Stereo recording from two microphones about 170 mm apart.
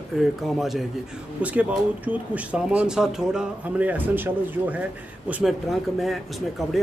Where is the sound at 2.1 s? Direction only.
5° right (ahead or behind).